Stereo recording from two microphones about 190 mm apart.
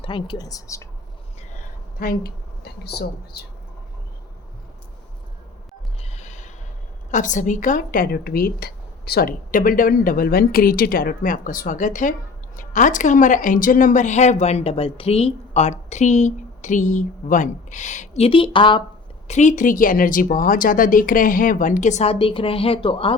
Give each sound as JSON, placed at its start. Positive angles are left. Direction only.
{"t": 0.0, "sound": "speech", "side_deg": 25}
{"t": 2.0, "sound": "a woman's voice", "side_deg": 50}
{"t": 6.0, "sound": "gasp", "side_deg": 35}
{"t": 7.1, "sound": "a woman's voice", "side_deg": 40}
{"t": 19.3, "sound": "speech", "side_deg": 40}